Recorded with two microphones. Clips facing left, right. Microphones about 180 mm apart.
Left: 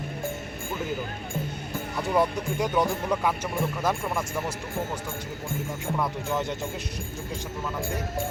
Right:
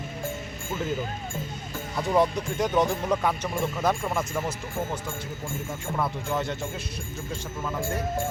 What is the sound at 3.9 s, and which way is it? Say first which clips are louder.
Speech: right 1 dB; 5° left (ahead or behind).